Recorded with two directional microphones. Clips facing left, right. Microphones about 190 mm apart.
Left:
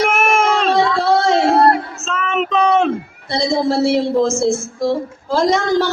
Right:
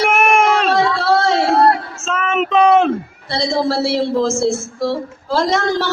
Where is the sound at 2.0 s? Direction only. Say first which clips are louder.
Right 2 dB; 5° right (ahead or behind).